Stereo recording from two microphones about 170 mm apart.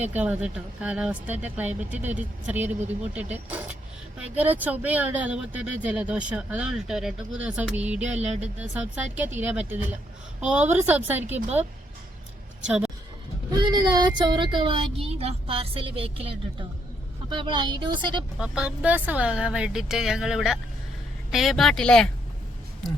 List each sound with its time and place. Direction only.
0.2 s speech: 10° right (ahead or behind)
12.6 s speech: 5° right (ahead or behind)
13.5 s a woman's voice: 25° right (ahead or behind)
18.3 s speech: 5° right (ahead or behind)